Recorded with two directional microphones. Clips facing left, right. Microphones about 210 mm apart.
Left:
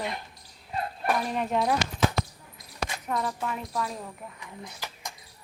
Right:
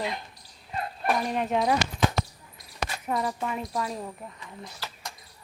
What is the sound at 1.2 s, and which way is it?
Speech, centre (ahead or behind).